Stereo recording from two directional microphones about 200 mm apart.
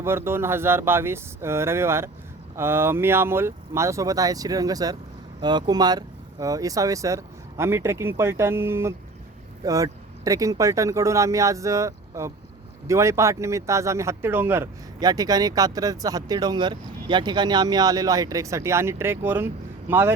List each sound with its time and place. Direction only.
0.0 s speech: 10° right (ahead or behind)